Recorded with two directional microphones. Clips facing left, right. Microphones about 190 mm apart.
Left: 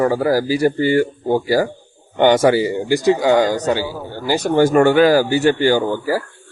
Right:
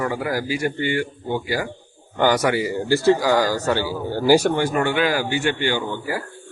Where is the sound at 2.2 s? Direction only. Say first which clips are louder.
Left 6 dB; 25° left (ahead or behind).